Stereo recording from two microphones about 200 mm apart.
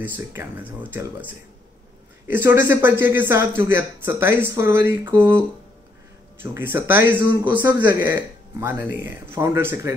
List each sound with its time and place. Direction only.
0.0 s speech: 10° right (ahead or behind)
2.2 s speech: 10° right (ahead or behind)
6.4 s speech: 10° right (ahead or behind)